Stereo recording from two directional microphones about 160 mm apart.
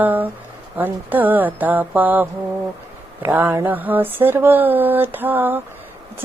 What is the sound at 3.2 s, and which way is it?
Mantra, 15° right (ahead or behind).